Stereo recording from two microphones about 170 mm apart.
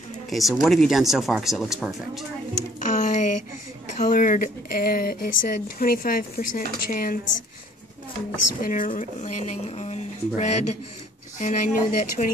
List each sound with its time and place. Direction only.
0.3 s speech: centre (ahead or behind)
2.8 s a sound: 45° left (ahead or behind)
3.9 s speech: 50° left (ahead or behind)
8.6 s speech: 55° left (ahead or behind)